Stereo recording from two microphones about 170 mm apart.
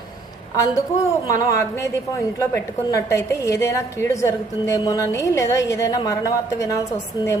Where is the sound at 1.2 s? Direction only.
20° left (ahead or behind).